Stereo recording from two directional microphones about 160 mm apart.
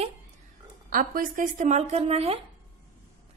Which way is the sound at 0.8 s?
60° right (ahead or behind).